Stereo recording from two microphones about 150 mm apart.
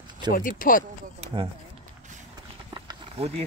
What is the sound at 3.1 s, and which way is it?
Speech, 40° right (ahead or behind).